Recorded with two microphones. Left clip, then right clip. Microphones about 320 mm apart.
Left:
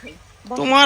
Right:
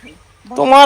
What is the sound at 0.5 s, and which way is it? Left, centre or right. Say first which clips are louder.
Speech: right 7 dB; centre.